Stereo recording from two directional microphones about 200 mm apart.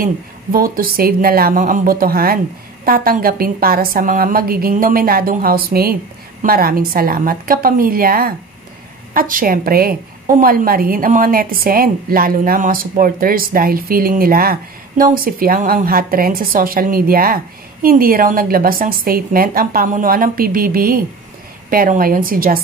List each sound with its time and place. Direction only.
0.0 s a woman's voice: 45° right (ahead or behind)